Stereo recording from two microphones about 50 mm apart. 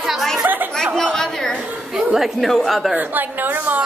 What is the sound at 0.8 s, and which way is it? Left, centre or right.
Speech, centre.